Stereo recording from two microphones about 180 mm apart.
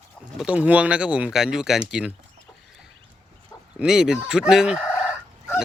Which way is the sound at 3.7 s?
5° right (ahead or behind).